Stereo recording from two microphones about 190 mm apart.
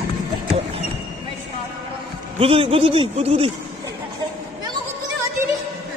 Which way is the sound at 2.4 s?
30° right (ahead or behind).